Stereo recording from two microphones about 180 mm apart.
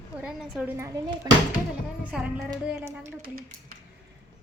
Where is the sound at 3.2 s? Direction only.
55° right (ahead or behind).